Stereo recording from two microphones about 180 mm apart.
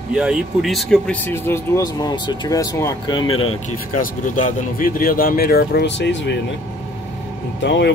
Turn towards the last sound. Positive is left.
turn(degrees=80)